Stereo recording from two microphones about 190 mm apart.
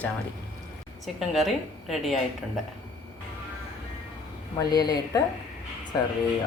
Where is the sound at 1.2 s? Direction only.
Centre (ahead or behind).